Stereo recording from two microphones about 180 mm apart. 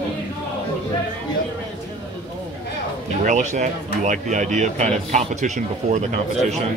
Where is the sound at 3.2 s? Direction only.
40° right (ahead or behind).